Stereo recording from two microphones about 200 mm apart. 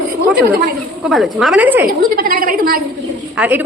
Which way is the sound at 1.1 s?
Centre (ahead or behind).